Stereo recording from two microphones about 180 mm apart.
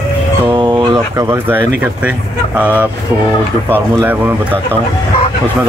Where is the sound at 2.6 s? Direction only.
10° right (ahead or behind).